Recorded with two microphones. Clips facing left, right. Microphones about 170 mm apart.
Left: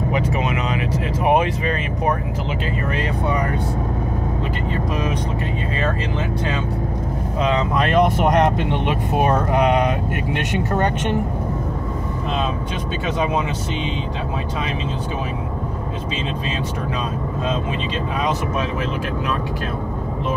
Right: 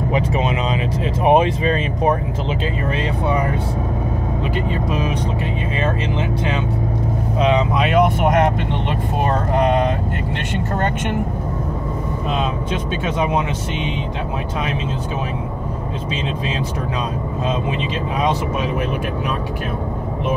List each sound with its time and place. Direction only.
0.1 s speech: 25° right (ahead or behind)
7.3 s speech: 15° right (ahead or behind)